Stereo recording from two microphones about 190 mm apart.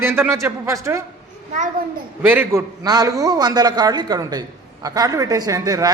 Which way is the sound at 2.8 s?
20° right (ahead or behind).